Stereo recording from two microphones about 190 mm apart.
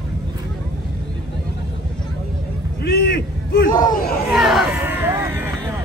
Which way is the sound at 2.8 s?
55° left (ahead or behind).